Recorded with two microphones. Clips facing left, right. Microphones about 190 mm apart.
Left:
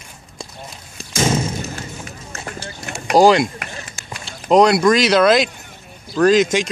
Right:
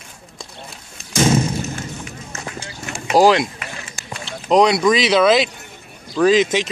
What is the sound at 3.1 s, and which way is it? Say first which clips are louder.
Speech: left 1 dB; centre (ahead or behind).